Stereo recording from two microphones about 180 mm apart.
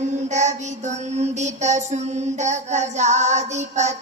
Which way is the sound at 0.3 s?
40° right (ahead or behind).